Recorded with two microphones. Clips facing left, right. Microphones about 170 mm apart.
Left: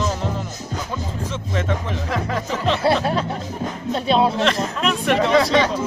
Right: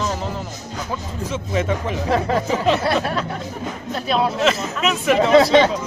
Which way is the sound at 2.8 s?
30° left (ahead or behind).